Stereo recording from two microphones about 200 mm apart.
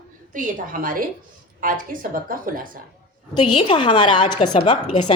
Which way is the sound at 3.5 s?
25° left (ahead or behind).